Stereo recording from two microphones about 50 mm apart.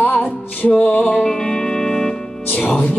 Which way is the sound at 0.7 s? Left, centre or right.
Centre.